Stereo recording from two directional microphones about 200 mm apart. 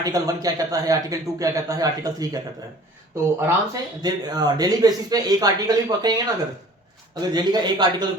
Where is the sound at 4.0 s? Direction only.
20° right (ahead or behind).